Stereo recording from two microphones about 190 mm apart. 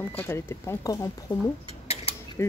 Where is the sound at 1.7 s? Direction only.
35° left (ahead or behind).